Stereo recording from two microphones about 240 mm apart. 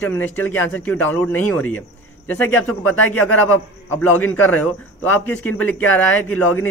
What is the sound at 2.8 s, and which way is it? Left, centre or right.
Speech, left.